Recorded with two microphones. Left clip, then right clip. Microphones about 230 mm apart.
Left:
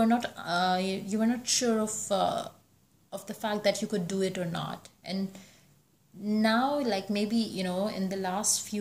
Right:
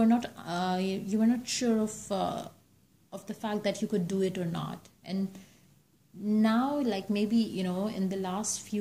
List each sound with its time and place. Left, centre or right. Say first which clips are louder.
0.0 s speech: left 1 dB; centre